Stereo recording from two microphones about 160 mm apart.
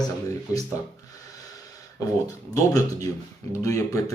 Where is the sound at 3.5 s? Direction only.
20° left (ahead or behind).